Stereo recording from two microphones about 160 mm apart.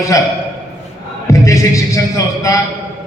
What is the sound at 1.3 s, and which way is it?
A man's voice, 20° left (ahead or behind).